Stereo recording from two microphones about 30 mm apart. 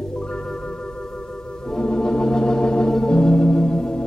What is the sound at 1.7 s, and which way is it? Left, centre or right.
Organ, left.